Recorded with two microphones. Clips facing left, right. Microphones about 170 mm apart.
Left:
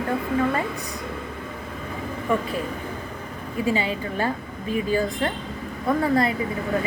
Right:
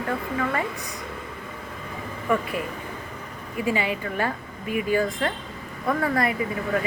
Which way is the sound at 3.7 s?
30° left (ahead or behind).